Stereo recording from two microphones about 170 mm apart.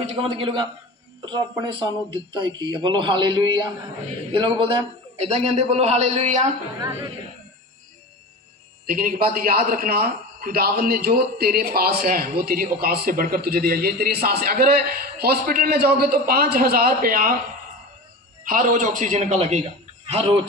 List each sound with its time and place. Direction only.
0.0 s a man's voice: 35° right (ahead or behind)
6.8 s speech: 15° right (ahead or behind)
8.8 s a man's voice: 55° right (ahead or behind)
18.5 s a man's voice: 50° right (ahead or behind)